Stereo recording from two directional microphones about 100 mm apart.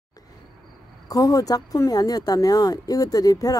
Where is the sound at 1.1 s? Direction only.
35° left (ahead or behind).